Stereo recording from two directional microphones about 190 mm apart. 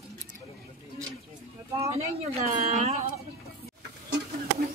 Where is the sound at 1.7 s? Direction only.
35° right (ahead or behind).